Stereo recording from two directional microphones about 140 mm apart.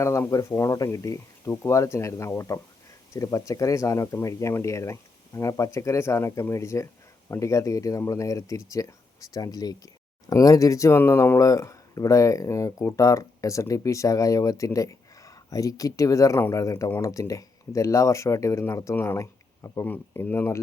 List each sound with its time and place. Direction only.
0.0 s speech: 20° left (ahead or behind)